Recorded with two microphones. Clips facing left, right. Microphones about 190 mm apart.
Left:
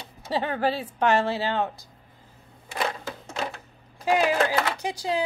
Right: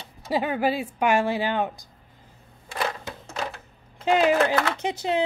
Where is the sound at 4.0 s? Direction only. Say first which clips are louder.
Right 2 dB; 20° right (ahead or behind).